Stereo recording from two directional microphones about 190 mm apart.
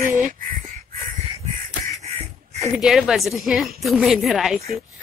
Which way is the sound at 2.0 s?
35° right (ahead or behind).